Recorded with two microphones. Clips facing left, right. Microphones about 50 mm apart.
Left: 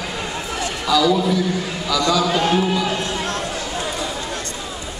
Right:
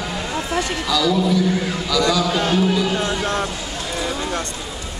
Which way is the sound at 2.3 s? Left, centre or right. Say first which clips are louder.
Even; centre.